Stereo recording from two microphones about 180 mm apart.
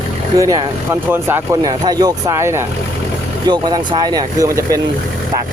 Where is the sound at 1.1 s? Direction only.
10° right (ahead or behind).